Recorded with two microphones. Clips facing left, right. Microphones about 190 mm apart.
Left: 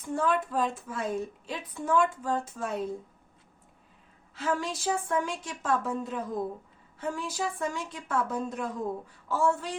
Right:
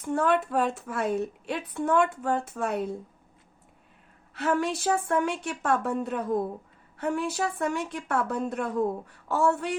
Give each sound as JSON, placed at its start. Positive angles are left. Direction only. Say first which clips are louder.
{"t": 0.0, "sound": "a woman's voice", "louder": "right 3 dB", "side_deg": -65}
{"t": 4.4, "sound": "a woman's voice", "louder": "right 4 dB", "side_deg": -65}